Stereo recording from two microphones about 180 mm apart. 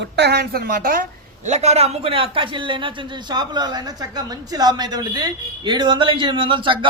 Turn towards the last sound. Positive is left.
turn(degrees=-25)  # may be behind; listen again after turning